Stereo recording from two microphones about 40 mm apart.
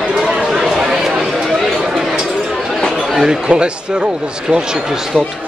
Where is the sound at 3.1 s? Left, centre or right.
Centre.